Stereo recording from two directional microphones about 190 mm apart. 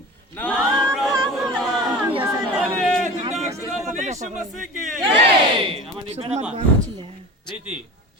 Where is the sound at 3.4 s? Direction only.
35° right (ahead or behind).